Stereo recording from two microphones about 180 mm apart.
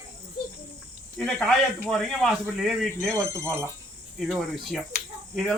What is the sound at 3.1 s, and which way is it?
Speech, 15° right (ahead or behind).